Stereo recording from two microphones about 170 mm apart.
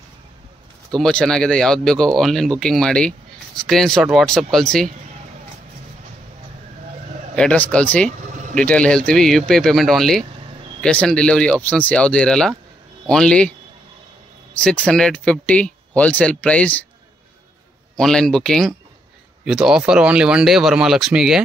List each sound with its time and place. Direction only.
0.9 s speech: 5° left (ahead or behind)
7.3 s speech: 5° left (ahead or behind)
8.3 s a sound: 45° right (ahead or behind)
8.5 s speech: 5° left (ahead or behind)
14.6 s speech: 5° left (ahead or behind)
17.9 s speech: 5° left (ahead or behind)